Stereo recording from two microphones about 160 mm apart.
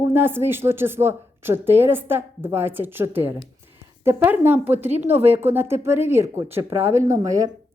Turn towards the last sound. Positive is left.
turn(degrees=-20)  # may be behind; listen again after turning